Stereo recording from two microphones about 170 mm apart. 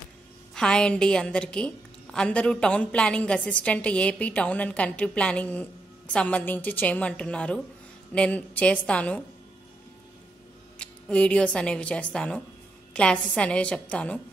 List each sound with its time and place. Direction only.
0.6 s a woman's voice: 5° left (ahead or behind)
10.8 s a woman's voice: 5° left (ahead or behind)